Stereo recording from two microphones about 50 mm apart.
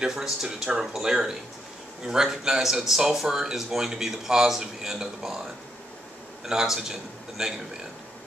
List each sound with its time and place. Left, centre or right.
0.0 s speech: centre
6.4 s speech: centre